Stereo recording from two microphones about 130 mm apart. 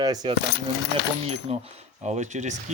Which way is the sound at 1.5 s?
55° right (ahead or behind).